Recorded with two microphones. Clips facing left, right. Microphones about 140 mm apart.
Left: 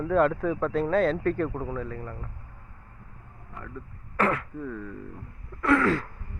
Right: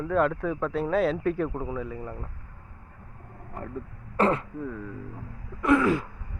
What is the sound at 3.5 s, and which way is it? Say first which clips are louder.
Vehicle: right 5 dB; 45° right (ahead or behind).